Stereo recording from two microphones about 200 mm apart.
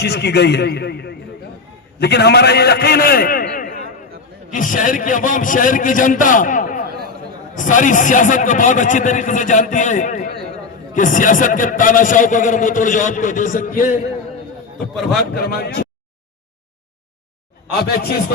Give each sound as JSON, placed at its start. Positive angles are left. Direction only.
{"t": 0.0, "sound": "a man's voice", "side_deg": 55}
{"t": 15.2, "sound": "a man's voice", "side_deg": 50}
{"t": 17.8, "sound": "a man's voice", "side_deg": 50}